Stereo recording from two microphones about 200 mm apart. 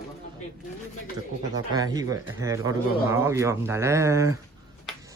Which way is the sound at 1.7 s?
20° right (ahead or behind).